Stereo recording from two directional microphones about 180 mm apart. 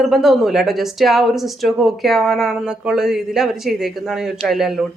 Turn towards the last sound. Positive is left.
turn(degrees=0)  # may be behind; listen again after turning